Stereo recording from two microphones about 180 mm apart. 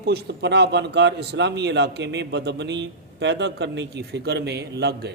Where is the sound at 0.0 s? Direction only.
65° right (ahead or behind).